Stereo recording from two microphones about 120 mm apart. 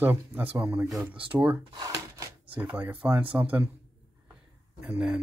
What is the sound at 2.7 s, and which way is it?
Speech, 15° right (ahead or behind).